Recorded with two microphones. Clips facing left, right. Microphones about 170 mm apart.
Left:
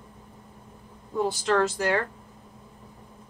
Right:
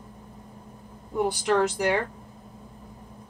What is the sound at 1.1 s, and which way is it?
Speech, 15° right (ahead or behind).